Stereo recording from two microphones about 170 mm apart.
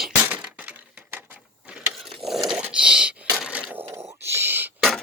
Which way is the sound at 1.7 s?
Centre (ahead or behind).